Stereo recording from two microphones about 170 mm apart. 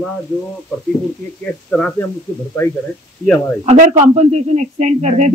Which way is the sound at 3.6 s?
40° right (ahead or behind).